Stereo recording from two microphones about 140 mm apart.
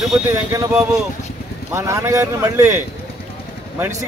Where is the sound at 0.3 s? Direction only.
20° right (ahead or behind).